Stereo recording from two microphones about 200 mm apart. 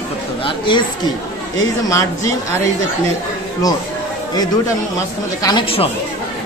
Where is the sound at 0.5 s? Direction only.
25° left (ahead or behind).